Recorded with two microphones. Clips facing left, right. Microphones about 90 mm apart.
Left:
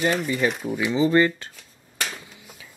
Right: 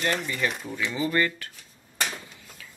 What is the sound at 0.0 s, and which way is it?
Speech, 5° left (ahead or behind).